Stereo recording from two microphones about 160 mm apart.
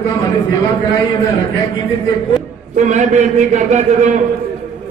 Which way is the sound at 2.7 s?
50° right (ahead or behind).